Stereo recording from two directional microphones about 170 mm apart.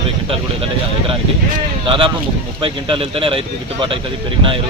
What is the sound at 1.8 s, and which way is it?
Speech, 30° right (ahead or behind).